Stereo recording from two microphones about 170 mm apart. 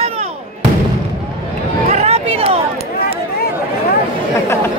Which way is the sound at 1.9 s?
40° right (ahead or behind).